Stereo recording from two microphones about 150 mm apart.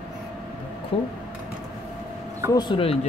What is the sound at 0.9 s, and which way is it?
Speech, 40° left (ahead or behind).